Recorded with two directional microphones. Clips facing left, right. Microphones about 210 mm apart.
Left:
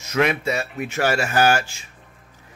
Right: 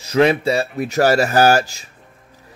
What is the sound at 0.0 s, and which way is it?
Speech, 30° right (ahead or behind).